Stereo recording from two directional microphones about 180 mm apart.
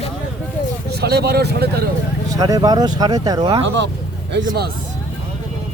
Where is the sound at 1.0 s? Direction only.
65° right (ahead or behind).